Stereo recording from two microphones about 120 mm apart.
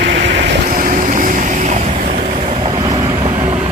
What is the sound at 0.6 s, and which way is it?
Vehicle, 90° right.